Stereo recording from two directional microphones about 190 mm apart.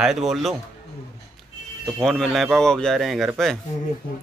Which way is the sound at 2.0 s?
5° left (ahead or behind).